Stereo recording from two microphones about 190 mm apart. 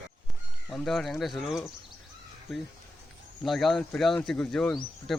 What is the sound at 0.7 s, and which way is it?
Speech, centre (ahead or behind).